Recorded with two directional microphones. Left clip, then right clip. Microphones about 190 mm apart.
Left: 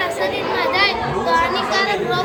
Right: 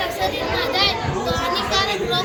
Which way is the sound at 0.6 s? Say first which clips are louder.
Left 3 dB; 35° left (ahead or behind).